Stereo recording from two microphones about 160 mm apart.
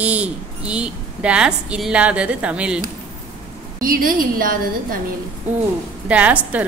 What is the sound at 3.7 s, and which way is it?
A woman's voice, 65° right (ahead or behind).